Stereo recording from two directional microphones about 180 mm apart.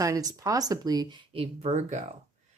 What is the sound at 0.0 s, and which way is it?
Speech, 20° right (ahead or behind).